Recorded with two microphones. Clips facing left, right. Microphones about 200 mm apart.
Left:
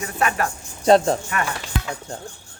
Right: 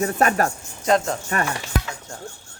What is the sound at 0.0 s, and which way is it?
Speech, 45° right (ahead or behind).